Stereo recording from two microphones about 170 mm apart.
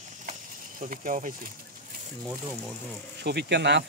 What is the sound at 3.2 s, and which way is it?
Speech, 80° right.